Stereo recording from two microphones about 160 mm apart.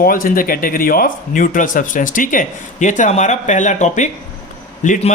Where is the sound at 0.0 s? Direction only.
60° left (ahead or behind).